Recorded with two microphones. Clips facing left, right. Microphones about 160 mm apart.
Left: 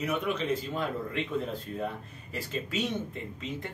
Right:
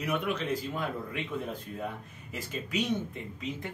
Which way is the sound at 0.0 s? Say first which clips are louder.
Left 1 dB; 5° left (ahead or behind).